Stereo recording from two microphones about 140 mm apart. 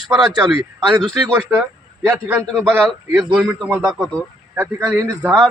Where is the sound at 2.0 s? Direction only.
10° right (ahead or behind).